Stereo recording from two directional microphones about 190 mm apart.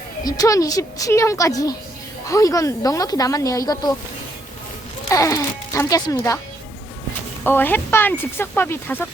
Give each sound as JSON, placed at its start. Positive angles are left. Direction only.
{"t": 0.3, "sound": "speech", "side_deg": 20}
{"t": 5.1, "sound": "speech", "side_deg": 15}
{"t": 7.4, "sound": "speech", "side_deg": 10}